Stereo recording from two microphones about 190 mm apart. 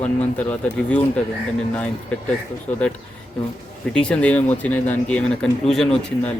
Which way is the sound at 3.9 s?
5° left (ahead or behind).